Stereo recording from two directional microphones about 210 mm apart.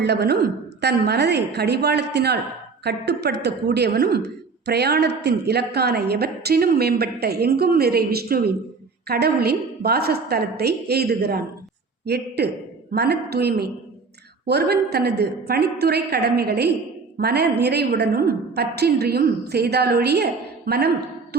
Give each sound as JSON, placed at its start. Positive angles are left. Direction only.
{"t": 0.0, "sound": "a woman's voice", "side_deg": -50}